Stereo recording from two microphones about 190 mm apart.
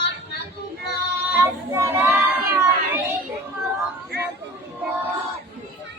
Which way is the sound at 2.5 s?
15° right (ahead or behind).